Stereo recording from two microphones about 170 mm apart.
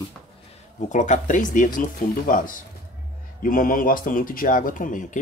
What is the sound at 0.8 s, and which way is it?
Speech, 45° left (ahead or behind).